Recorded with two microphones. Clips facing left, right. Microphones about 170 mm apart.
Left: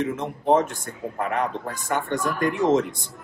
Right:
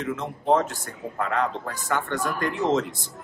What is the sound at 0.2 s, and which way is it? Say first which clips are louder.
A man's voice: left 1 dB; 20° left (ahead or behind).